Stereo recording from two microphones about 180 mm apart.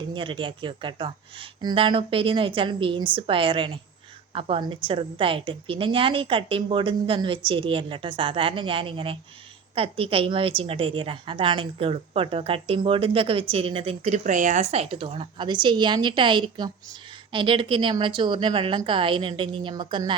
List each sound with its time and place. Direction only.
0.1 s a woman's voice: 25° right (ahead or behind)